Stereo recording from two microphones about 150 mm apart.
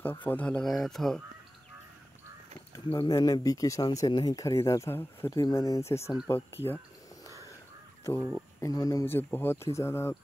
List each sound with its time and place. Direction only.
0.0 s speech: 10° left (ahead or behind)
2.7 s speech: 25° left (ahead or behind)
8.5 s speech: 25° left (ahead or behind)